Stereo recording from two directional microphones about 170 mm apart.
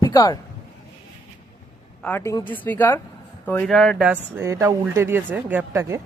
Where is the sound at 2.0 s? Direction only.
15° left (ahead or behind); by 5.9 s 15° right (ahead or behind).